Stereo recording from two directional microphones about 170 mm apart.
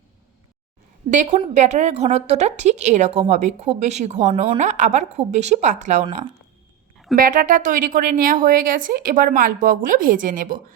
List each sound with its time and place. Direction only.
1.1 s a woman's voice: 45° right (ahead or behind)
7.2 s a woman's voice: 50° right (ahead or behind)